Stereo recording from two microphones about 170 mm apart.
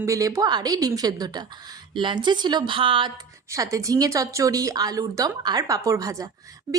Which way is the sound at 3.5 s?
20° right (ahead or behind).